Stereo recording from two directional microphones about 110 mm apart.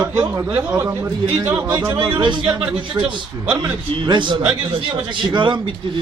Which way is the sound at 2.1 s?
45° right (ahead or behind).